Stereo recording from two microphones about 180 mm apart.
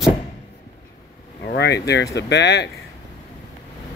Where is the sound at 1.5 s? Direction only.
70° left (ahead or behind).